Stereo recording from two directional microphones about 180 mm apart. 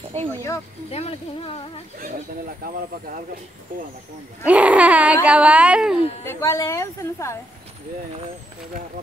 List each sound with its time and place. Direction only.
0.3 s a woman's voice: 15° left (ahead or behind)
0.8 s speech: 35° left (ahead or behind)
2.0 s speech: 50° right (ahead or behind)
4.5 s speech: 5° right (ahead or behind)
6.2 s a woman's voice: 15° left (ahead or behind)